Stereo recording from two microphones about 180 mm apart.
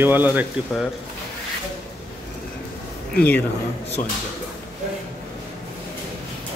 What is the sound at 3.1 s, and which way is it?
Speech, 10° left (ahead or behind).